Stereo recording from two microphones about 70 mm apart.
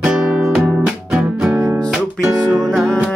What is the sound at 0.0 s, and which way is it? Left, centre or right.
Music, centre.